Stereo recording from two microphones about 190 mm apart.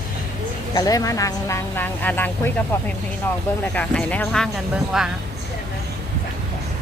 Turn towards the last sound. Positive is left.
turn(degrees=0)  # may be behind; listen again after turning